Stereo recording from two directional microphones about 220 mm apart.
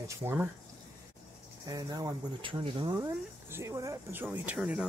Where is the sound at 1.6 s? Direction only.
15° right (ahead or behind).